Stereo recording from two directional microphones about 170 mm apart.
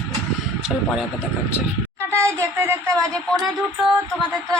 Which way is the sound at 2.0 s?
15° right (ahead or behind).